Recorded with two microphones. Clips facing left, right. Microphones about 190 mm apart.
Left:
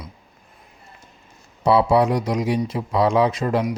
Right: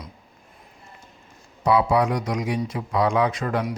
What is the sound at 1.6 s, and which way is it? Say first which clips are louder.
A man's voice: left 3 dB; 25° left (ahead or behind).